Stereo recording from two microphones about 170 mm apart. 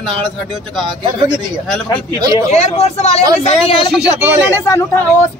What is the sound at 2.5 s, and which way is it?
A man's voice, 40° left (ahead or behind).